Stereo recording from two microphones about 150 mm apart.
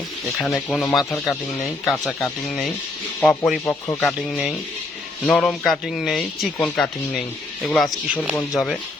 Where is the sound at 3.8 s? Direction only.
15° left (ahead or behind).